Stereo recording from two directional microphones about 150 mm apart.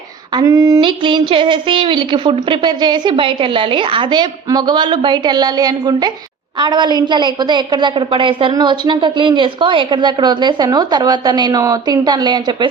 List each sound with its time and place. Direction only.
0.3 s a woman's voice: 20° right (ahead or behind)